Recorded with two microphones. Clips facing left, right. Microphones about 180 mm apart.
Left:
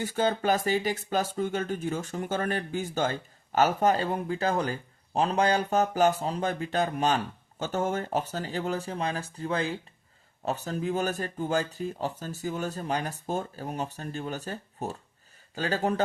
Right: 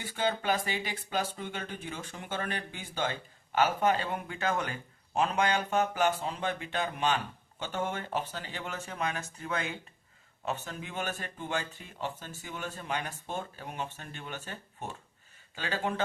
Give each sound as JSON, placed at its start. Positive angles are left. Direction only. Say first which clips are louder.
{"t": 0.0, "sound": "speech", "louder": "left 5 dB", "side_deg": 40}